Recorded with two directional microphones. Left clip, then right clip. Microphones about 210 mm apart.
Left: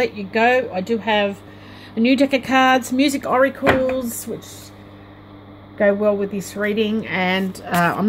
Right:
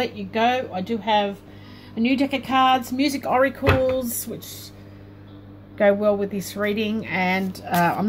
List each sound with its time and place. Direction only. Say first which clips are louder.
0.0 s speech: left 4 dB; 15° left (ahead or behind)
5.8 s speech: left 2 dB; centre (ahead or behind)